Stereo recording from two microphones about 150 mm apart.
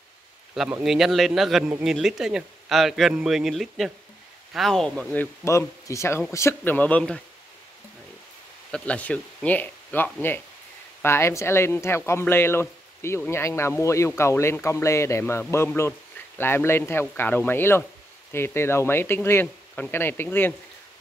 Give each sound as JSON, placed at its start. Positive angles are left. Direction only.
{"t": 0.6, "sound": "a man's voice", "side_deg": -5}
{"t": 8.7, "sound": "speech", "side_deg": 10}